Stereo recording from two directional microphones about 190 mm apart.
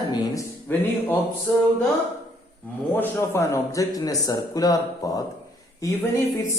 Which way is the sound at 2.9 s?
15° left (ahead or behind).